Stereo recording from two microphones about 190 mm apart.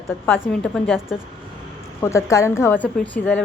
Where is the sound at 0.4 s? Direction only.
Centre (ahead or behind).